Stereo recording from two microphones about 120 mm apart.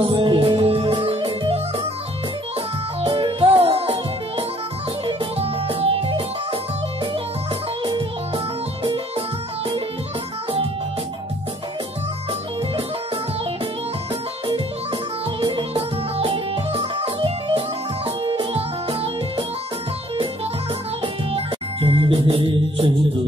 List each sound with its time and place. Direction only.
0.0 s music: 45° right (ahead or behind)
3.0 s music: 45° right (ahead or behind)
15.4 s music: 50° right (ahead or behind)
21.0 s music: 55° right (ahead or behind)